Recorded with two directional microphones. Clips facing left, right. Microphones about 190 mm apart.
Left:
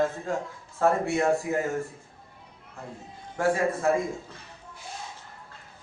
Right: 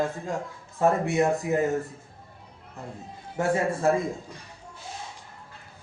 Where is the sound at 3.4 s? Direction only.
20° right (ahead or behind).